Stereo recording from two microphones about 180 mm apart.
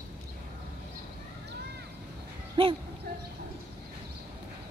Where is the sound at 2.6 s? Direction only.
30° right (ahead or behind).